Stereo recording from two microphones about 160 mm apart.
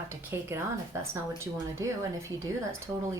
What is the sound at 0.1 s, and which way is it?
Speech, 15° right (ahead or behind).